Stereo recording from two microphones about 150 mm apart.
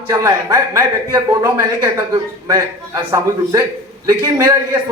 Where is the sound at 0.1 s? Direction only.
20° right (ahead or behind).